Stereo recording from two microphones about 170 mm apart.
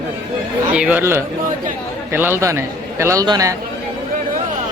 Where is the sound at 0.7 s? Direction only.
10° right (ahead or behind).